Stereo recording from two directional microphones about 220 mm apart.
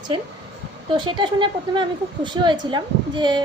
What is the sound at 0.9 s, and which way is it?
A woman's voice, 20° right (ahead or behind).